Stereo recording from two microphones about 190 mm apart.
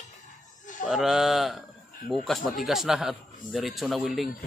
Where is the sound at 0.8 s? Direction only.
Centre (ahead or behind).